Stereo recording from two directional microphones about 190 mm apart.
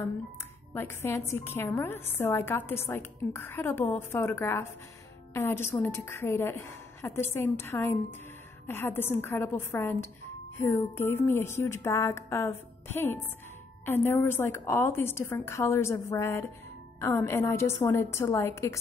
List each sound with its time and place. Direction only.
0.7 s a woman's voice: 15° left (ahead or behind)